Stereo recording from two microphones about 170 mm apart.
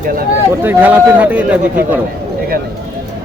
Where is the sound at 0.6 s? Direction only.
10° right (ahead or behind).